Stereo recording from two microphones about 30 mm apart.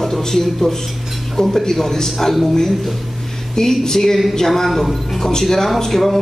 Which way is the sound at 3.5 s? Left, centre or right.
Centre.